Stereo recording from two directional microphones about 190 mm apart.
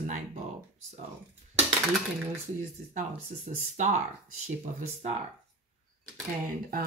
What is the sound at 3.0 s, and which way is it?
Speech, 40° right (ahead or behind).